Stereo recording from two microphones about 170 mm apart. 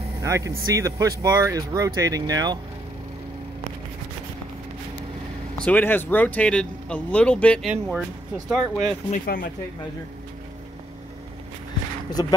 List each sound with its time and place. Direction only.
0.2 s speech: 20° right (ahead or behind)
5.6 s speech: 10° left (ahead or behind)
7.6 s speech: 5° right (ahead or behind)
9.2 s speech: 60° left (ahead or behind)
12.1 s speech: 20° left (ahead or behind)